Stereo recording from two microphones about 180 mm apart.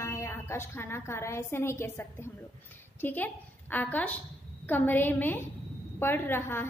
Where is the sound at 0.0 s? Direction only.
15° left (ahead or behind).